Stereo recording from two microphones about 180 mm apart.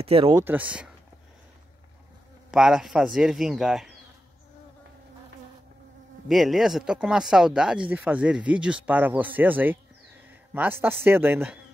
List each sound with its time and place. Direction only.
0.0 s speech: 30° right (ahead or behind)
0.4 s speech: 10° right (ahead or behind)
2.5 s speech: 5° right (ahead or behind)
6.2 s speech: centre (ahead or behind)
10.2 s a sound: 10° right (ahead or behind)
11.1 s speech: 10° right (ahead or behind)